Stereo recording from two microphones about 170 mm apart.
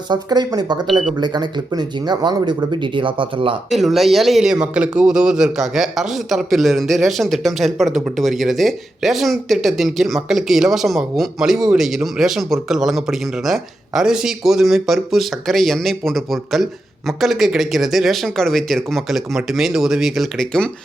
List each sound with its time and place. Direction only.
0.1 s speech: 25° right (ahead or behind)
3.7 s a man's voice: centre (ahead or behind)